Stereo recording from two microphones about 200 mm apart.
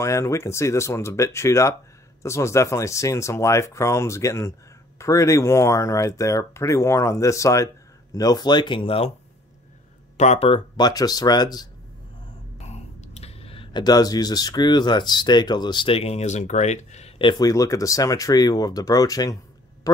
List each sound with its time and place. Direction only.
0.0 s speech: 15° left (ahead or behind)
10.1 s speech: 35° left (ahead or behind); by 11.6 s 20° left (ahead or behind)
12.5 s speech: 30° left (ahead or behind)